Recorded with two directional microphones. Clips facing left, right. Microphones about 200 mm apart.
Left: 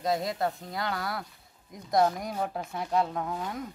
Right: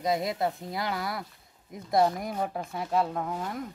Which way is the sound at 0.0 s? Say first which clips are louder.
Right 1 dB; centre (ahead or behind).